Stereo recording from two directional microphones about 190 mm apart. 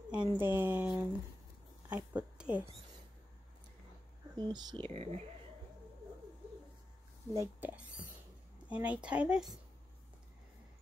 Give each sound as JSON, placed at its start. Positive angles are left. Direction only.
{"t": 0.1, "sound": "a sound", "side_deg": -10}
{"t": 4.4, "sound": "speech", "side_deg": -20}
{"t": 7.3, "sound": "speech", "side_deg": -10}